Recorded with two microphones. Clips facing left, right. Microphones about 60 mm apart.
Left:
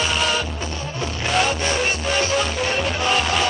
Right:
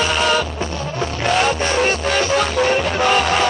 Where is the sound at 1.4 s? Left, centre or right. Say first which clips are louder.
Right 4 dB; right.